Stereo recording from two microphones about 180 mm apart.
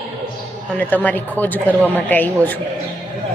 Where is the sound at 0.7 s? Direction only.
10° left (ahead or behind).